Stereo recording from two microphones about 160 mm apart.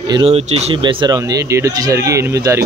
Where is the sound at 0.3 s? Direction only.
40° right (ahead or behind).